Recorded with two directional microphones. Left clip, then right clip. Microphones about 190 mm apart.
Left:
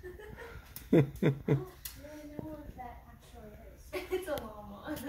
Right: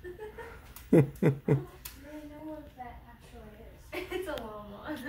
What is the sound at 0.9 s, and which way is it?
Speech, 15° right (ahead or behind).